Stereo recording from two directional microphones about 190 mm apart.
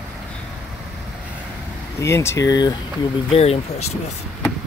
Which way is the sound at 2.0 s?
15° left (ahead or behind).